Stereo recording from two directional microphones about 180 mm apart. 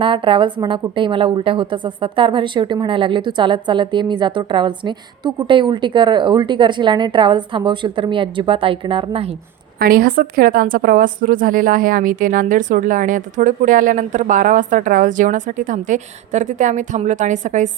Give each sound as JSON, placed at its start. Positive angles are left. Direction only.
{"t": 0.0, "sound": "a woman's voice", "side_deg": -30}
{"t": 9.7, "sound": "a woman's voice", "side_deg": -55}